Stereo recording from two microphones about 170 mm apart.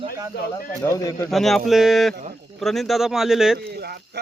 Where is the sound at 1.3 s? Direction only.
Centre (ahead or behind).